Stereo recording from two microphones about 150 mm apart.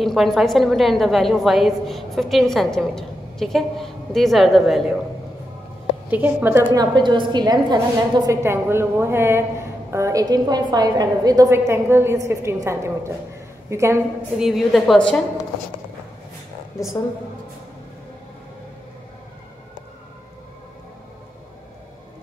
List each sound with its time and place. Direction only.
0.0 s a woman's voice: centre (ahead or behind)
6.0 s a woman's voice: 10° right (ahead or behind)
6.7 s a woman's voice: 30° right (ahead or behind)
14.4 s a woman's voice: centre (ahead or behind)